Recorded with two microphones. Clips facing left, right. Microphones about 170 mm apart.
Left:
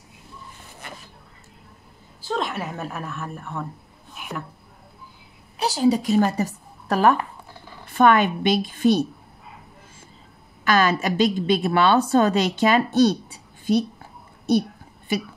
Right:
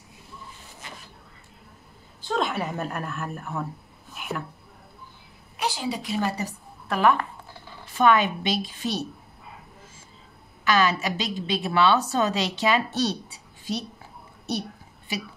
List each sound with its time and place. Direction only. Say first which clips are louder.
0.8 s a sound: left 3 dB; 55° left (ahead or behind)
2.2 s a woman's voice: even; centre (ahead or behind)
4.1 s a sound: right 2 dB; centre (ahead or behind)
5.6 s a woman's voice: left 9 dB; 40° left (ahead or behind)
7.8 s a woman's voice: left 3 dB; 55° left (ahead or behind)
10.6 s a woman's voice: left 3 dB; 50° left (ahead or behind)